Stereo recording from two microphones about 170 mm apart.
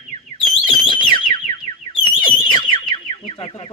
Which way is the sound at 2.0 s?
25° left (ahead or behind).